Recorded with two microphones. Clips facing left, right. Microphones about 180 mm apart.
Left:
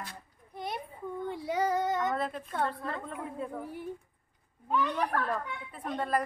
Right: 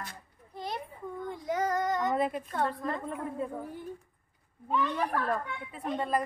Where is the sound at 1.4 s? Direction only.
10° left (ahead or behind).